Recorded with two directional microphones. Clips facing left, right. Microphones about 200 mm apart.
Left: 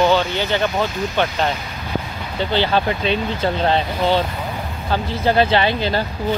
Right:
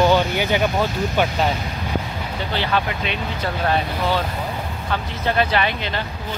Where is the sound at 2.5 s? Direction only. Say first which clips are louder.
Left 5 dB; 30° left (ahead or behind).